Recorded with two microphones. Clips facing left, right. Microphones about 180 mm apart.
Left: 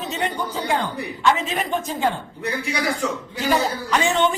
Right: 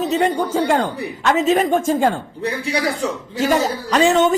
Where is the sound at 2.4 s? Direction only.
35° right (ahead or behind).